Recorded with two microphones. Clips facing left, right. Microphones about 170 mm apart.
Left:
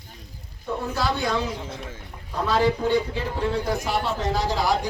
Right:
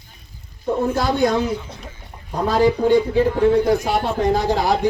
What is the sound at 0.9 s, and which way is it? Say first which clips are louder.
A man's voice: right 5 dB; 50° right (ahead or behind).